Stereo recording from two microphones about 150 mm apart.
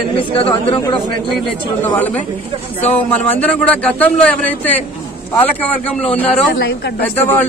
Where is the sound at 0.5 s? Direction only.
30° left (ahead or behind).